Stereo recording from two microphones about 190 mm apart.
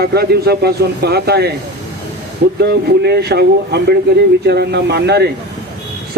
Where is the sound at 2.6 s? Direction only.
60° right (ahead or behind).